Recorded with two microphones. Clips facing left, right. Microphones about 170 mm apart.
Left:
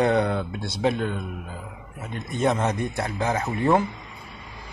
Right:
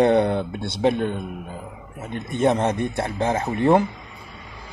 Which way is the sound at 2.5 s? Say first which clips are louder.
Right 3 dB; 30° right (ahead or behind).